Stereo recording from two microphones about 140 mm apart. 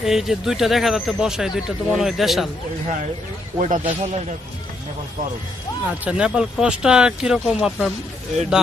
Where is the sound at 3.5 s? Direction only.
65° right (ahead or behind).